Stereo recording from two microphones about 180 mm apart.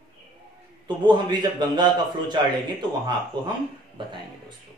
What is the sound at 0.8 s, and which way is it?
Speech, 25° right (ahead or behind).